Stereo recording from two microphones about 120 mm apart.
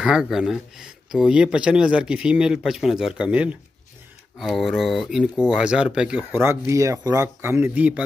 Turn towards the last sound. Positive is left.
turn(degrees=-15)  # may be behind; listen again after turning